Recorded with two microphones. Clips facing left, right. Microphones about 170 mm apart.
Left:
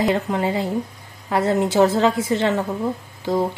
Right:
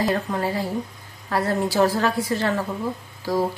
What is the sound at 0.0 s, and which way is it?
A woman's voice, 20° left (ahead or behind).